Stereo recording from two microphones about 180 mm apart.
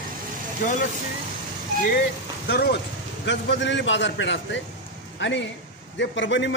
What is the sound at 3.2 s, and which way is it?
A man's voice, 80° left.